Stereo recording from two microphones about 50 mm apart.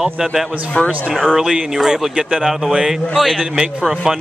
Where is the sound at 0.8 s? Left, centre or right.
Left.